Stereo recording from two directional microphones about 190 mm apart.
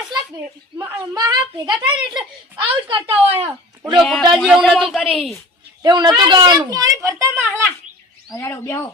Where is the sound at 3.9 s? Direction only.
Centre (ahead or behind).